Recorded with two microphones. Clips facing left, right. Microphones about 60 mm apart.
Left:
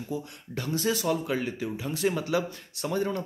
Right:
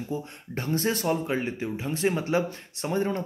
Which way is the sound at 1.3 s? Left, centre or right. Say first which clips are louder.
Right 1 dB; right.